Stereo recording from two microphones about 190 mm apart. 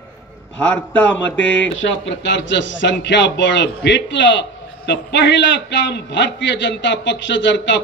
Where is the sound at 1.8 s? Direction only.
75° left (ahead or behind).